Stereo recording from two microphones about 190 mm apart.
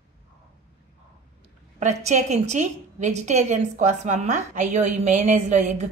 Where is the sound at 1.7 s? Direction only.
40° right (ahead or behind).